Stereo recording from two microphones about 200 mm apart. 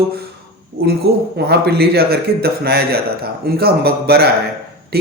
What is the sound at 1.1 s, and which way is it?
Speech, 55° right (ahead or behind).